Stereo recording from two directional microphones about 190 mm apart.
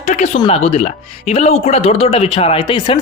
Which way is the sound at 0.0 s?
35° left (ahead or behind).